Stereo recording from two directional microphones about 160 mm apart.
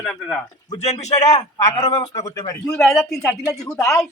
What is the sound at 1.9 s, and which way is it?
Speech, 40° left (ahead or behind).